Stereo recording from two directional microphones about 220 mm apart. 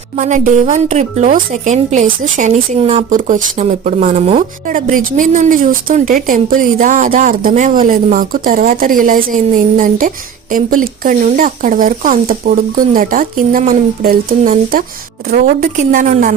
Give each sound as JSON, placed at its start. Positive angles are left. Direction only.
{"t": 0.2, "sound": "a woman's voice", "side_deg": -35}